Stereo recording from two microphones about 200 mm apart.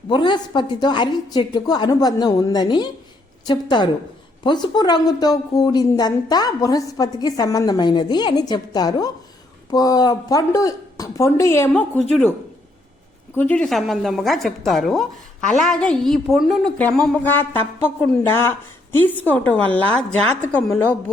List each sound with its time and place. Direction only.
0.1 s a woman's voice: 20° left (ahead or behind); by 12.2 s 5° left (ahead or behind)
13.3 s a woman's voice: 10° left (ahead or behind)